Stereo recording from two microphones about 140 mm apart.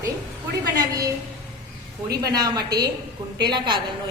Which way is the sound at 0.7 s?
25° right (ahead or behind).